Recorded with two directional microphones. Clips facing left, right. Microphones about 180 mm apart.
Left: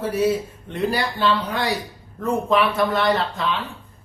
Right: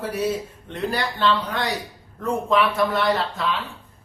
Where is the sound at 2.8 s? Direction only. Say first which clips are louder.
Left 1 dB; centre (ahead or behind).